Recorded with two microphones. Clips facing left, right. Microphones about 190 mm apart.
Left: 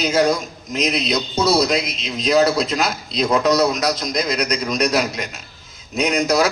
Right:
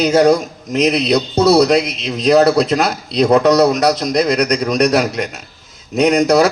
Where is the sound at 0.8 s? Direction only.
65° right (ahead or behind).